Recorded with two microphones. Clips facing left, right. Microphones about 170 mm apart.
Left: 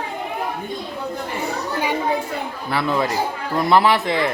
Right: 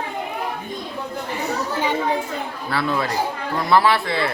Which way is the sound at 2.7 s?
15° left (ahead or behind).